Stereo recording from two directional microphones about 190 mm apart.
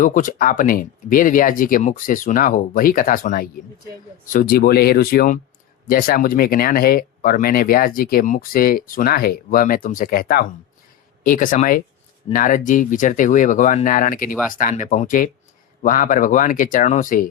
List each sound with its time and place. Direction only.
0.0 s speech: 45° left (ahead or behind)